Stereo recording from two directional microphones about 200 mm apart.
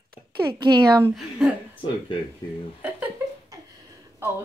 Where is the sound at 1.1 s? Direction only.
5° right (ahead or behind).